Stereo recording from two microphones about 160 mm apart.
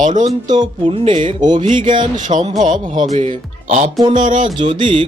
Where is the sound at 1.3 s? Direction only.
25° right (ahead or behind).